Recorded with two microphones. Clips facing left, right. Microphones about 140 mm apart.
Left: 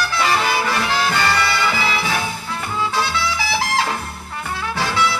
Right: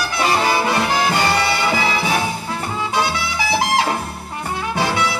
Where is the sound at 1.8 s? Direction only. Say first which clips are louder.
Right 2 dB; 25° right (ahead or behind).